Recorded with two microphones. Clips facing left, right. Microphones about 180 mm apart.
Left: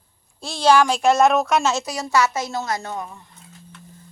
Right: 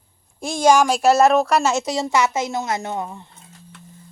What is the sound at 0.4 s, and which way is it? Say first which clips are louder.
Speech: right 1 dB; 45° right (ahead or behind).